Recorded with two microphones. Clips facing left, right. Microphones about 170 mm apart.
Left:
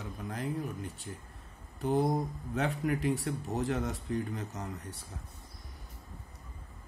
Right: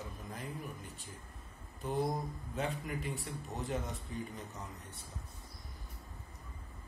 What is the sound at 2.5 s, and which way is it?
Speech, 75° left (ahead or behind).